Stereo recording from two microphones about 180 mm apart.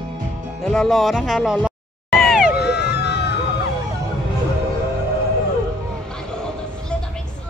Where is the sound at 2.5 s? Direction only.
65° left (ahead or behind).